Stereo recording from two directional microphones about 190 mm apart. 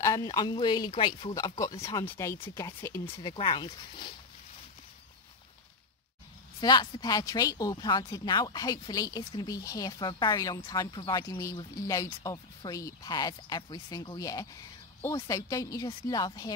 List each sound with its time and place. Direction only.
0.0 s speech: 20° left (ahead or behind)
6.6 s speech: 20° left (ahead or behind)